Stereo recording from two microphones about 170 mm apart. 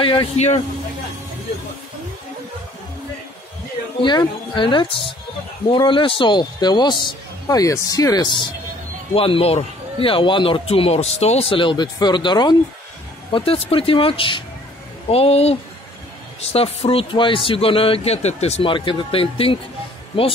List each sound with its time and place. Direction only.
0.0 s speech: 30° left (ahead or behind)
4.0 s a man's voice: 25° left (ahead or behind)